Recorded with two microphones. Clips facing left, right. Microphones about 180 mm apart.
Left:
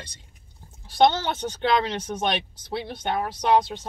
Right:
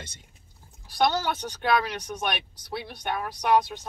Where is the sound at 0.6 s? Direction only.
25° left (ahead or behind).